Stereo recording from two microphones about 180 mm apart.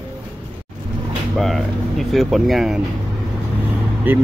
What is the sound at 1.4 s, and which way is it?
Speech, centre (ahead or behind).